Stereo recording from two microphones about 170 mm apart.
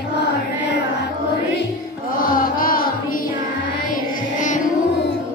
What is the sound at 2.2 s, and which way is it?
Music, 55° left (ahead or behind).